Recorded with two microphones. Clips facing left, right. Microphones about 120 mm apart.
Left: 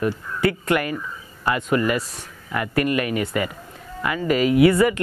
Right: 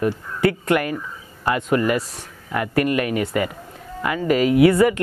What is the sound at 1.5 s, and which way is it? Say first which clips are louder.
Speech: right 1 dB; 45° right (ahead or behind).